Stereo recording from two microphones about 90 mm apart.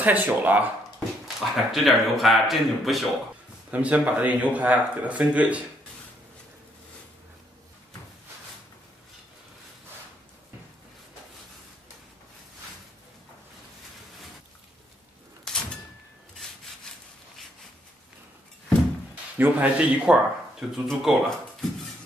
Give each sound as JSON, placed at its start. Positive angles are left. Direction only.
{"t": 0.0, "sound": "speech", "side_deg": -20}
{"t": 1.2, "sound": "speech", "side_deg": 0}
{"t": 3.7, "sound": "speech", "side_deg": -15}
{"t": 15.4, "sound": "door", "side_deg": 5}
{"t": 19.3, "sound": "speech", "side_deg": -15}
{"t": 20.7, "sound": "speech", "side_deg": -5}